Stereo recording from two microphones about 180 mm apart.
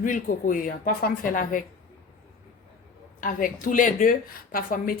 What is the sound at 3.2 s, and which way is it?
Speech, 50° left (ahead or behind).